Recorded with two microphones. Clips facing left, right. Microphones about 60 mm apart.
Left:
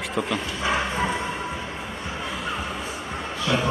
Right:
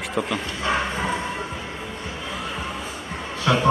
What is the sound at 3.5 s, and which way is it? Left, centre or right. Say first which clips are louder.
Speech: right 4 dB; right.